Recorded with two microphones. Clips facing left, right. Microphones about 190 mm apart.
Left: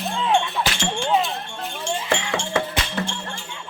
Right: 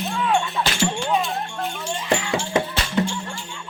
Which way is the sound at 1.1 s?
20° left (ahead or behind).